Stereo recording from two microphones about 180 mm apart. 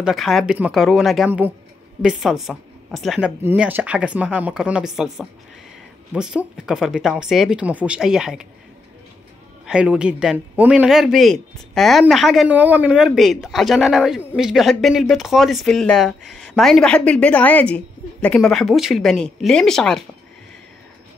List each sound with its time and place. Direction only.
0.0 s a man's voice: centre (ahead or behind)
9.7 s a man's voice: 5° right (ahead or behind)